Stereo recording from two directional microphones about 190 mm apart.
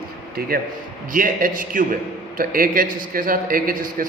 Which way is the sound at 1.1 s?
45° right (ahead or behind).